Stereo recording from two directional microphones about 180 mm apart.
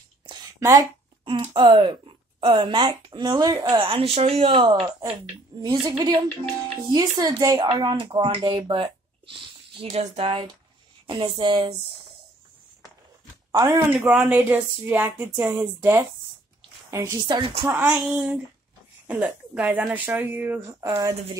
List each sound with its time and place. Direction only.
0.6 s speech: 15° right (ahead or behind)
1.2 s speech: 30° right (ahead or behind)
13.5 s speech: 20° right (ahead or behind)
13.9 s speech: centre (ahead or behind); by 17.6 s 25° right (ahead or behind)
17.6 s speech: 10° right (ahead or behind)